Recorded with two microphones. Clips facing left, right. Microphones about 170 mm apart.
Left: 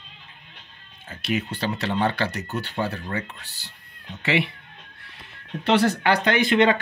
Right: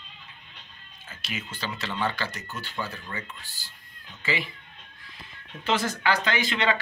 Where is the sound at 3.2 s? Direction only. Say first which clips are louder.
Left 2 dB; 70° left (ahead or behind).